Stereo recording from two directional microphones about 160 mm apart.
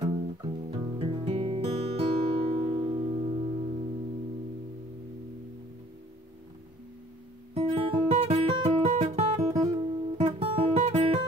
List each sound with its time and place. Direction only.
0.0 s guitar: 30° right (ahead or behind)
7.5 s music: 35° right (ahead or behind)